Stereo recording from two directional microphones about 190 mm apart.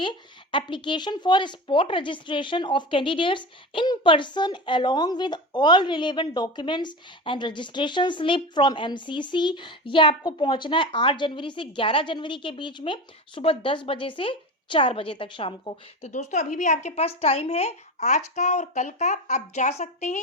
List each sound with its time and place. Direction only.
0.5 s speech: 25° left (ahead or behind)